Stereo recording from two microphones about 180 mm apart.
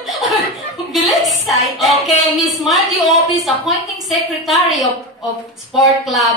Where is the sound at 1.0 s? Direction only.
Centre (ahead or behind).